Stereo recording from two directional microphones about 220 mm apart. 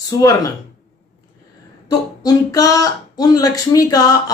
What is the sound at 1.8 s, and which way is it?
Speech, 15° left (ahead or behind).